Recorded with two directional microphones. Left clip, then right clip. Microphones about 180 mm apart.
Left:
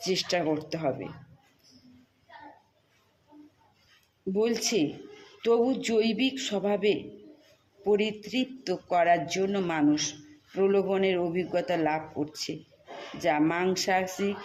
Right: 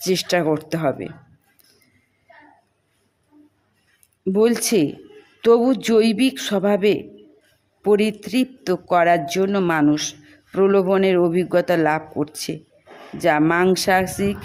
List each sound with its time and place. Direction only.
0.0 s a man's voice: 35° right (ahead or behind)
4.4 s a man's voice: 40° right (ahead or behind)